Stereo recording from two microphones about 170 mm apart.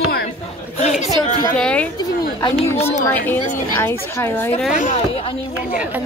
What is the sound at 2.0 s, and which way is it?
A woman's voice, 20° left (ahead or behind).